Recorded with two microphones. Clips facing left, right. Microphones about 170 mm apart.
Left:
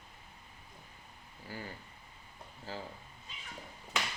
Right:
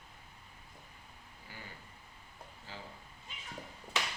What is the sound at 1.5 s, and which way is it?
Speech, 35° left (ahead or behind).